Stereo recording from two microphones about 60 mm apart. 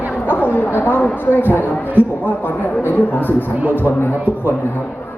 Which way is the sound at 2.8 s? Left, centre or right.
Left.